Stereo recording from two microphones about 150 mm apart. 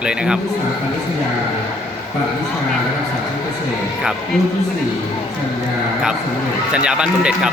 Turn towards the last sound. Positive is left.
turn(degrees=-5)  # may be behind; listen again after turning